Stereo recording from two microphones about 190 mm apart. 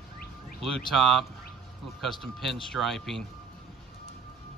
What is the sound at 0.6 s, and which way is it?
Speech, centre (ahead or behind).